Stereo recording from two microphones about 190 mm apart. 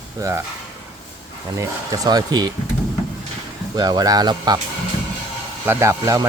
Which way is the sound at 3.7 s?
20° right (ahead or behind).